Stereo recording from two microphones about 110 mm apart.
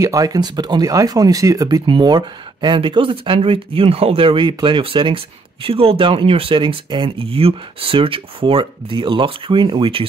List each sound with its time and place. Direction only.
0.0 s speech: 30° right (ahead or behind)
1.9 s speech: 45° right (ahead or behind)